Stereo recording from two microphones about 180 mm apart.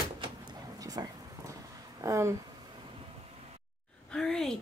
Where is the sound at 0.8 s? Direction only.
20° right (ahead or behind).